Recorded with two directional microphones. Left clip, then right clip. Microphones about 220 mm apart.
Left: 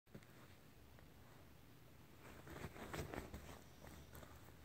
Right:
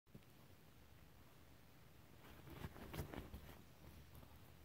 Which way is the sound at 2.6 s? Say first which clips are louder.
Left 3 dB; 25° right (ahead or behind).